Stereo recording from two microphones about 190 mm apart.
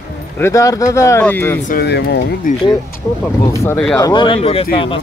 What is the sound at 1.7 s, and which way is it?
Speech, 55° left (ahead or behind).